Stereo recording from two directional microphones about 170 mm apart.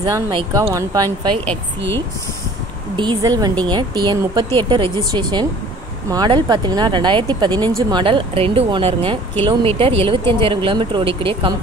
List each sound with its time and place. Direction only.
0.0 s speech: 25° right (ahead or behind)
1.3 s a woman's voice: 5° left (ahead or behind)
3.0 s speech: 25° right (ahead or behind)